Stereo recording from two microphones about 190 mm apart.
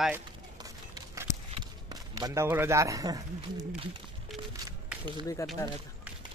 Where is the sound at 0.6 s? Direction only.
20° right (ahead or behind).